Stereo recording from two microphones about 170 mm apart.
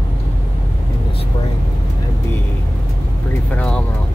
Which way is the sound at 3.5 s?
5° left (ahead or behind).